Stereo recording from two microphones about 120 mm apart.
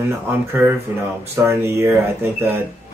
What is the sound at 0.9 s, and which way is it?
Speech, 20° right (ahead or behind).